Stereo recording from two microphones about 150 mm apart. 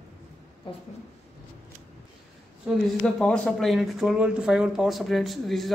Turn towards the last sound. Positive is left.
turn(degrees=0)  # may be behind; listen again after turning